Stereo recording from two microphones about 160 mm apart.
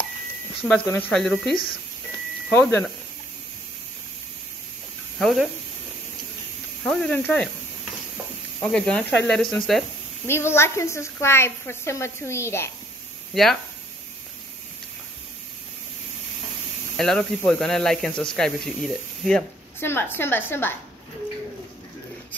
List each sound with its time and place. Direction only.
0.7 s a woman's voice: 10° left (ahead or behind)
5.2 s speech: centre (ahead or behind)
6.8 s speech: 5° left (ahead or behind)
8.5 s speech: 10° left (ahead or behind)
10.2 s a woman's voice: 15° left (ahead or behind)
13.3 s speech: centre (ahead or behind)
16.9 s speech: 5° left (ahead or behind)
19.8 s a woman's voice: 15° left (ahead or behind)